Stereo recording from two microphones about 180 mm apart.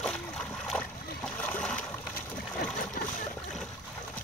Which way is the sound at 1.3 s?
10° left (ahead or behind).